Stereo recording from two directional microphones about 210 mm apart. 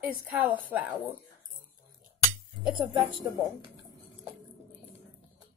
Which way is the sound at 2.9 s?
20° right (ahead or behind).